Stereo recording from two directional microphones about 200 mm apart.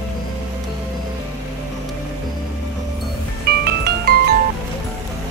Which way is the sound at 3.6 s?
55° right (ahead or behind).